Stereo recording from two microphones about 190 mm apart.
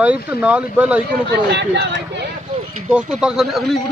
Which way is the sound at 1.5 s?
70° right (ahead or behind).